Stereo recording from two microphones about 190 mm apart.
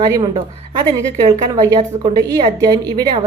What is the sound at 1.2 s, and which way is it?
A woman's voice, 20° right (ahead or behind).